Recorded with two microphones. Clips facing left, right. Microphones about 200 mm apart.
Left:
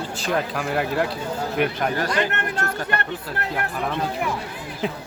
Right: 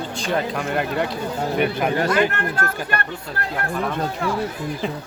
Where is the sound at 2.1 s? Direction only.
20° left (ahead or behind).